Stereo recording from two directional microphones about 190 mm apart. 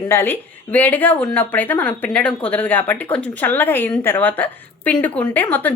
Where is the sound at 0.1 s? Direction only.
10° left (ahead or behind).